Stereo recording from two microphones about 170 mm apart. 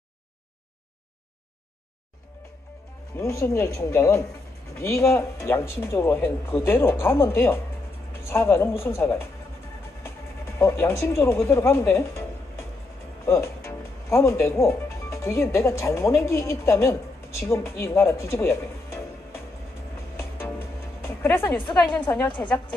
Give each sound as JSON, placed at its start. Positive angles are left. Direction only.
{"t": 3.2, "sound": "speech", "side_deg": 15}
{"t": 10.6, "sound": "speech", "side_deg": 15}
{"t": 20.2, "sound": "music", "side_deg": 15}
{"t": 21.5, "sound": "a woman's voice", "side_deg": 25}